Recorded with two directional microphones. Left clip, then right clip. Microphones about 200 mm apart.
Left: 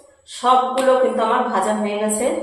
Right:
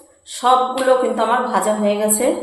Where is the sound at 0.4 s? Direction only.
35° right (ahead or behind).